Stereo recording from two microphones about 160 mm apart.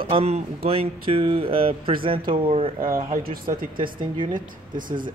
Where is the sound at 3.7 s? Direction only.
30° right (ahead or behind).